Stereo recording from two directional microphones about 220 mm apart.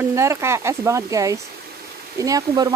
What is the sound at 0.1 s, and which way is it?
Speech, 10° right (ahead or behind).